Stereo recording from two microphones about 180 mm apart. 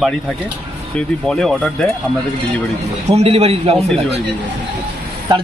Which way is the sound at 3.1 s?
35° right (ahead or behind).